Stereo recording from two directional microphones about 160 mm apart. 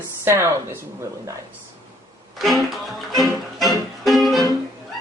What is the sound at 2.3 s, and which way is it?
Music, centre (ahead or behind).